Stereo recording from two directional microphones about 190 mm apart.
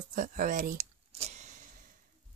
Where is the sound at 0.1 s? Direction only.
40° right (ahead or behind).